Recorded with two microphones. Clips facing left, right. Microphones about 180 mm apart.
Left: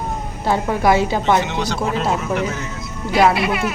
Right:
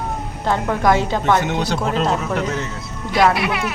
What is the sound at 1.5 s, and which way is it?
Speech, 50° right (ahead or behind).